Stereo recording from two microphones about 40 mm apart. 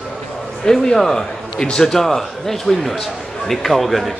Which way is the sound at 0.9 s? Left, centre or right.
Centre.